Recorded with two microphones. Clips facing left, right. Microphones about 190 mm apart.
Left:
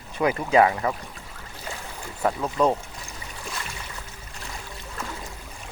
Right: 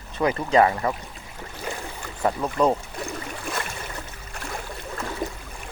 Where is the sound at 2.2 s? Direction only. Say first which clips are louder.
Right 1 dB; 5° right (ahead or behind).